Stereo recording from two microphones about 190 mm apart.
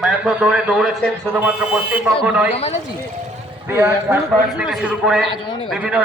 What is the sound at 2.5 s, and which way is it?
Speech, 35° left (ahead or behind).